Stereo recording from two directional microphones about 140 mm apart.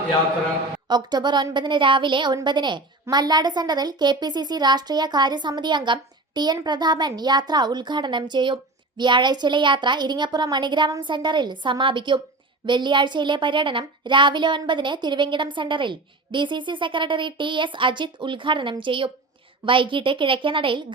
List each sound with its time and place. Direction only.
0.9 s a woman's voice: 30° right (ahead or behind)